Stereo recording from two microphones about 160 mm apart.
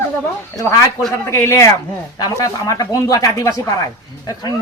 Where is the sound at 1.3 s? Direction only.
15° left (ahead or behind).